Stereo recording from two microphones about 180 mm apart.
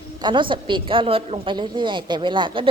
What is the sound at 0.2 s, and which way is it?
A woman's voice, 25° right (ahead or behind).